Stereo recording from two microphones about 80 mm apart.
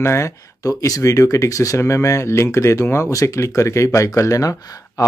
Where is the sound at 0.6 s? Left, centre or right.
Left.